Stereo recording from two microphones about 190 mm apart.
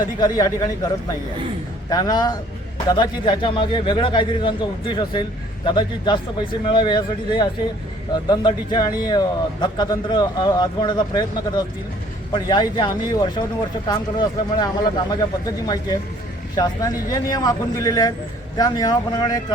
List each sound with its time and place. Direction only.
0.0 s speech: 20° left (ahead or behind)
1.9 s speech: 20° left (ahead or behind)